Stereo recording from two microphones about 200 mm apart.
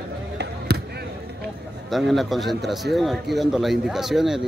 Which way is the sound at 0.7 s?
55° right (ahead or behind).